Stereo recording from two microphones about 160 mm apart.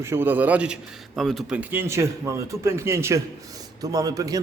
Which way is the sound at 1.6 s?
15° right (ahead or behind).